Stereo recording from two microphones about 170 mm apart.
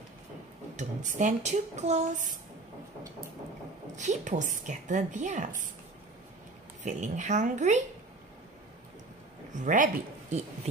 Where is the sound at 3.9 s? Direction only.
45° right (ahead or behind).